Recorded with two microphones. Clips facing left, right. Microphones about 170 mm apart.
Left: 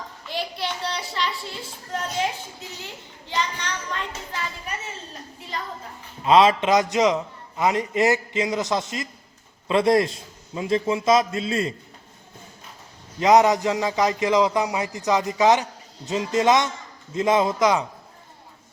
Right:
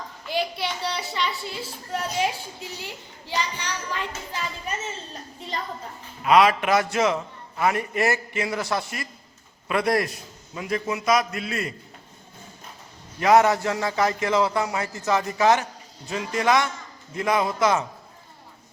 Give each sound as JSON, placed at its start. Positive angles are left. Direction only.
{"t": 0.3, "sound": "a child's voice", "side_deg": 0}
{"t": 1.9, "sound": "a child's voice", "side_deg": -10}
{"t": 6.2, "sound": "a man's voice", "side_deg": 25}
{"t": 13.1, "sound": "a man's voice", "side_deg": 20}